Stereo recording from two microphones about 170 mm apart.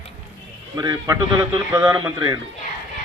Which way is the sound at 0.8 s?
20° right (ahead or behind).